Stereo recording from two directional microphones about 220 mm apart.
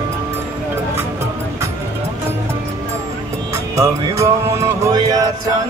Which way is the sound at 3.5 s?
15° right (ahead or behind).